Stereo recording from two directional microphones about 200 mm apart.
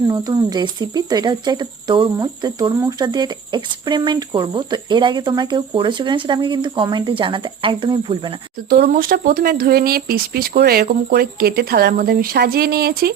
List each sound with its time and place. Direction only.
0.1 s speech: 20° right (ahead or behind)
8.7 s speech: 45° right (ahead or behind)